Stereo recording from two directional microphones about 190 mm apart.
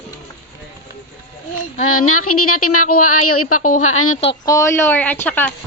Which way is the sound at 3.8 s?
90° left.